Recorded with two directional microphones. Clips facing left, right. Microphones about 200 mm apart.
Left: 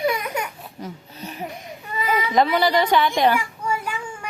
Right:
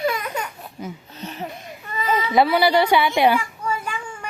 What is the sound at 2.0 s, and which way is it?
Baby cry, 10° left (ahead or behind).